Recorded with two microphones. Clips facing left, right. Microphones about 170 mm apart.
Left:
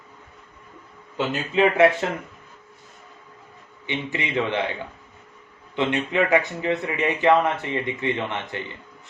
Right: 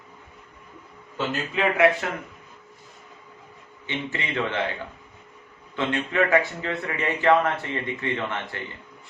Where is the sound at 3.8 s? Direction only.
15° left (ahead or behind).